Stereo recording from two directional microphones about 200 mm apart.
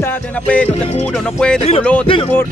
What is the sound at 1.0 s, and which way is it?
Music, 5° left (ahead or behind).